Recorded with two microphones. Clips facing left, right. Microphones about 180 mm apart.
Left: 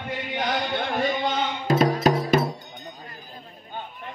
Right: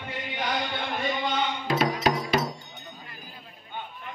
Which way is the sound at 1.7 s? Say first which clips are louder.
Left 6 dB; 45° left (ahead or behind).